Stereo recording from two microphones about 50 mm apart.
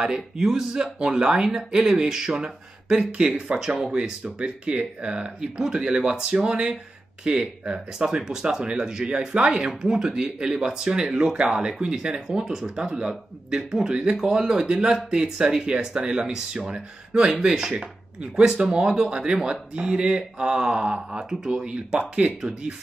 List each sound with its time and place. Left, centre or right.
0.0 s speech: centre
4.2 s speech: right
22.2 s speech: right